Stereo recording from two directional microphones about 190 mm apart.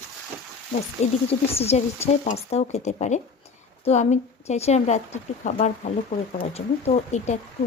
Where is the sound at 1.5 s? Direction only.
35° left (ahead or behind).